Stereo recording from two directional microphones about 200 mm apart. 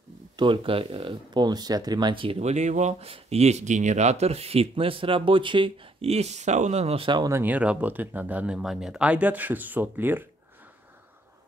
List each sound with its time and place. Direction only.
0.4 s speech: 25° right (ahead or behind); by 10.2 s 10° right (ahead or behind)